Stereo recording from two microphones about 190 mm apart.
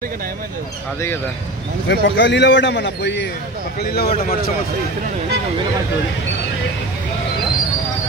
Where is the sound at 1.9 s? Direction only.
70° left (ahead or behind).